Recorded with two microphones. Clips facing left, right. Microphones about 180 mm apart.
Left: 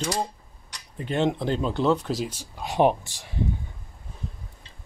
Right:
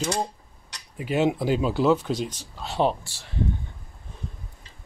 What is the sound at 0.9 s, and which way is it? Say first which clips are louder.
Speech: right 2 dB; 5° right (ahead or behind).